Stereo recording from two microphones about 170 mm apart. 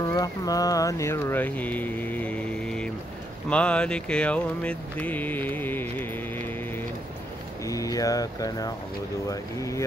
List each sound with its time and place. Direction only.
0.0 s speech: 20° left (ahead or behind)
7.6 s speech: 20° left (ahead or behind)